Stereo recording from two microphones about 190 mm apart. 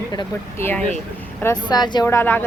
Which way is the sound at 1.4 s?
20° left (ahead or behind).